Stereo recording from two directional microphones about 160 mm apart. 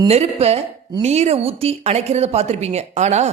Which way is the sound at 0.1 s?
40° right (ahead or behind).